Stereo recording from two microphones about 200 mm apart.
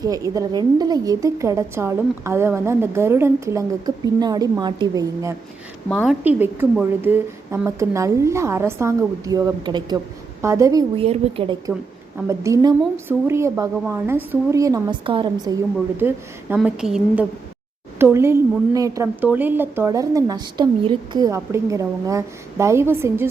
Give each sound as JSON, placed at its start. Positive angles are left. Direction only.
{"t": 0.0, "sound": "a woman's voice", "side_deg": -15}
{"t": 6.1, "sound": "a woman's voice", "side_deg": -10}
{"t": 12.1, "sound": "a woman's voice", "side_deg": -15}
{"t": 16.0, "sound": "a woman's voice", "side_deg": -10}